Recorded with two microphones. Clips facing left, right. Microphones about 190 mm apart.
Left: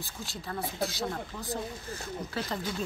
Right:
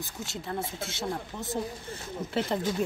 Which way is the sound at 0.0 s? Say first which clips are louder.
Right 3 dB; 25° right (ahead or behind).